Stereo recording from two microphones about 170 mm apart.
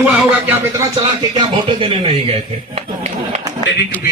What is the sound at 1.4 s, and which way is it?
Speech, 30° right (ahead or behind).